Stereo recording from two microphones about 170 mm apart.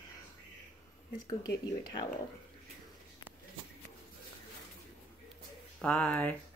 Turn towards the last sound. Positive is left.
turn(degrees=10)  # may be behind; listen again after turning